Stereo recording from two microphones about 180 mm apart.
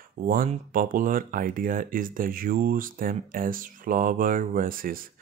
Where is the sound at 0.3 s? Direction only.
50° right (ahead or behind).